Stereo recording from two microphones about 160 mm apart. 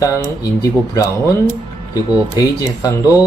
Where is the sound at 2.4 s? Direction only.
20° left (ahead or behind).